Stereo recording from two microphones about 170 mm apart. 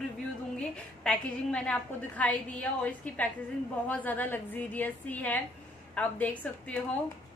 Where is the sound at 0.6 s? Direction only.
5° left (ahead or behind).